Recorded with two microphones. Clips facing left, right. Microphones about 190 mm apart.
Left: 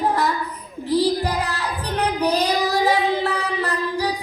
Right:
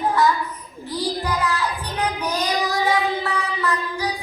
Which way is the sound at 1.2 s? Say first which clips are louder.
Even; 35° left (ahead or behind).